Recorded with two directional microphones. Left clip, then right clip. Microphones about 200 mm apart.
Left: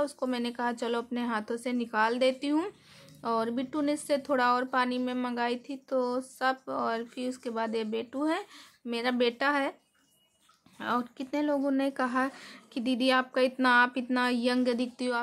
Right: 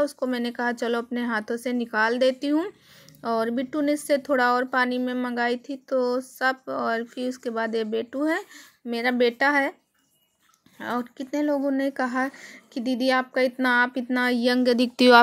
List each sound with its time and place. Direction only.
0.0 s a woman's voice: 20° right (ahead or behind)
10.8 s a woman's voice: 15° right (ahead or behind)